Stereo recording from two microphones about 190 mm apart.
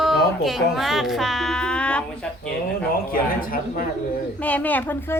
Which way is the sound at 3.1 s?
50° left (ahead or behind).